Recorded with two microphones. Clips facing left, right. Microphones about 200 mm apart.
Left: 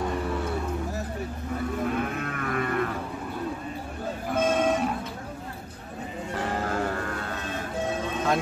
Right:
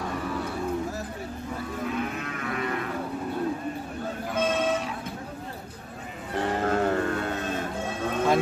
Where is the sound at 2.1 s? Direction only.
50° left (ahead or behind).